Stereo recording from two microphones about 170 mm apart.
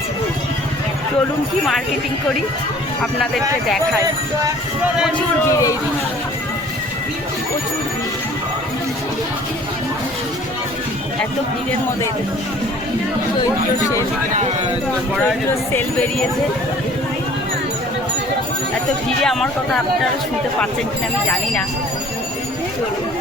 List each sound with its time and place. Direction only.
5.5 s speech: 20° left (ahead or behind)
15.7 s speech: 5° left (ahead or behind)
19.2 s speech: centre (ahead or behind)